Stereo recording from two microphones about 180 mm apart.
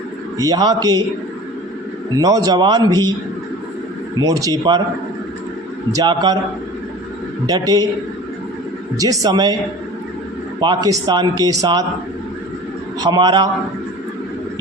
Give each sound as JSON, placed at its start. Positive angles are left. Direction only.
{"t": 0.3, "sound": "speech", "side_deg": -20}
{"t": 2.1, "sound": "speech", "side_deg": -20}
{"t": 4.2, "sound": "speech", "side_deg": -20}
{"t": 5.9, "sound": "speech", "side_deg": -20}
{"t": 7.4, "sound": "speech", "side_deg": -20}
{"t": 9.0, "sound": "speech", "side_deg": -20}
{"t": 10.6, "sound": "speech", "side_deg": -25}
{"t": 13.0, "sound": "speech", "side_deg": -25}